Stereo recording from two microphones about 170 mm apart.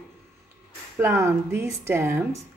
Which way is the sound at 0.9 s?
15° right (ahead or behind).